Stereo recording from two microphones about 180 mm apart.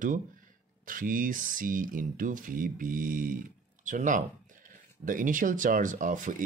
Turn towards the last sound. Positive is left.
turn(degrees=-45)  # may be behind; listen again after turning